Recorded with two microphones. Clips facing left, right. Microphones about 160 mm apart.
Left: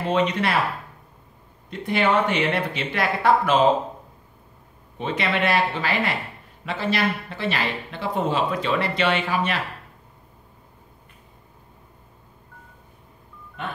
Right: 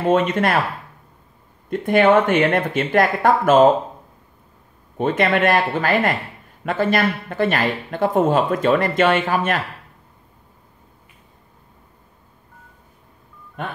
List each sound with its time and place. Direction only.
0.0 s speech: 50° right (ahead or behind)
1.7 s speech: 50° right (ahead or behind)
4.9 s speech: 50° right (ahead or behind)